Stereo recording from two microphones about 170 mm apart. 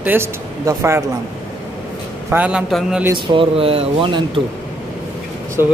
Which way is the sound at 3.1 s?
30° right (ahead or behind).